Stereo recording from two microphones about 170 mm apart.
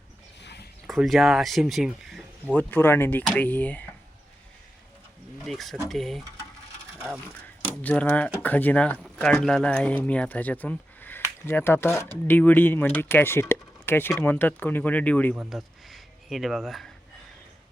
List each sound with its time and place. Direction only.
0.4 s a sound: 80° left
0.9 s speech: centre (ahead or behind)
5.5 s speech: centre (ahead or behind)
7.8 s speech: 10° left (ahead or behind)